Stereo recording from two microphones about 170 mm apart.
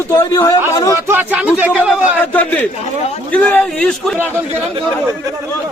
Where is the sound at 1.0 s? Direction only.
10° right (ahead or behind).